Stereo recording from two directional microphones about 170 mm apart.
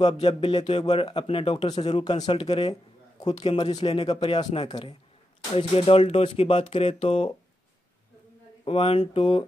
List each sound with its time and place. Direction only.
0.0 s speech: 35° left (ahead or behind)
2.7 s speech: 25° left (ahead or behind)
8.6 s speech: 30° left (ahead or behind)